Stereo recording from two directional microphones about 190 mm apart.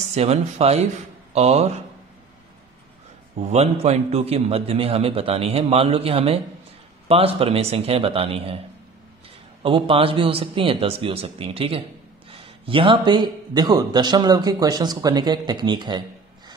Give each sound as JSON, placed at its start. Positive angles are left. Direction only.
{"t": 0.1, "sound": "a man's voice", "side_deg": -35}
{"t": 3.3, "sound": "a man's voice", "side_deg": -35}
{"t": 9.6, "sound": "a man's voice", "side_deg": -25}